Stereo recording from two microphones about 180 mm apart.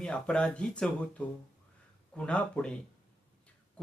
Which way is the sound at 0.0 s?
5° left (ahead or behind).